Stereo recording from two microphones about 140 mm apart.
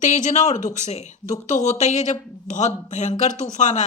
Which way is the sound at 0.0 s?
65° left (ahead or behind).